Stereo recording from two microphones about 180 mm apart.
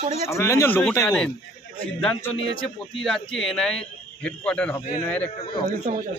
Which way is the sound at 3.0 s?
Centre (ahead or behind).